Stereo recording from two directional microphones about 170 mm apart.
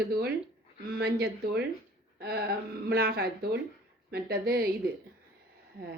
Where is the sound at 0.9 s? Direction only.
65° right (ahead or behind).